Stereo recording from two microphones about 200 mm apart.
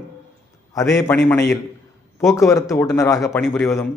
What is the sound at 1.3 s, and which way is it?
Speech, 10° left (ahead or behind).